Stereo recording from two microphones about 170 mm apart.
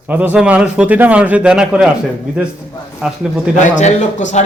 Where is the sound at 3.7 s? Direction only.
45° left (ahead or behind).